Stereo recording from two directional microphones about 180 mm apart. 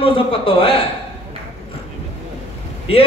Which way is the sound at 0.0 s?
30° left (ahead or behind).